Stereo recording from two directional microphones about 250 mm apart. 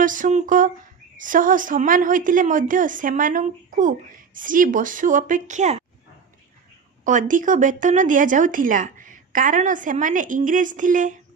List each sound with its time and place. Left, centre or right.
0.0 s a woman's voice: right
7.0 s a woman's voice: right